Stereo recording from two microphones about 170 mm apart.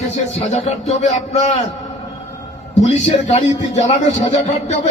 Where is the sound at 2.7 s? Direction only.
45° left (ahead or behind).